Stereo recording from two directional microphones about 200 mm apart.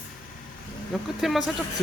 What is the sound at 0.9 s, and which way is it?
Speech, centre (ahead or behind).